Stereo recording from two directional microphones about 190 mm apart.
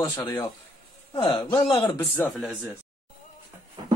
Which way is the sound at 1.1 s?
25° left (ahead or behind).